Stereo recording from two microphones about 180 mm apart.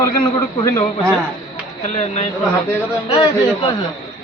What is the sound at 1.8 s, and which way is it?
Speech, 40° left (ahead or behind).